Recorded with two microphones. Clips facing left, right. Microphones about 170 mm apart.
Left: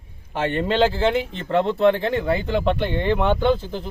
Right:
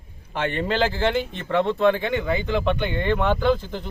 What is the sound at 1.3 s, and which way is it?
A man's voice, 30° left (ahead or behind).